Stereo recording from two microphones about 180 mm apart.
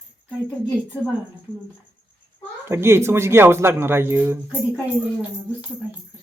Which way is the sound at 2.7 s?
15° right (ahead or behind).